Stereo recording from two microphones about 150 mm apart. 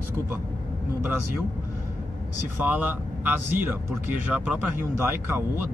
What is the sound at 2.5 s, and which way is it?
Speech, 10° right (ahead or behind).